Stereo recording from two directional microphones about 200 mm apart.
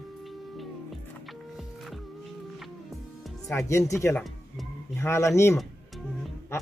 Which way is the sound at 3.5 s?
15° left (ahead or behind).